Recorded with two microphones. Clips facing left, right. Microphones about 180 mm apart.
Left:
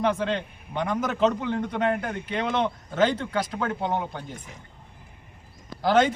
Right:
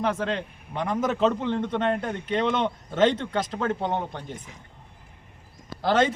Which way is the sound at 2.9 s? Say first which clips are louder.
Right 2 dB; 30° right (ahead or behind).